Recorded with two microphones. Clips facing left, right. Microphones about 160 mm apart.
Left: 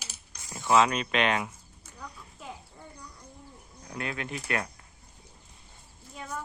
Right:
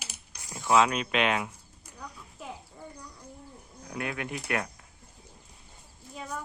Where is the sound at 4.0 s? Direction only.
15° right (ahead or behind).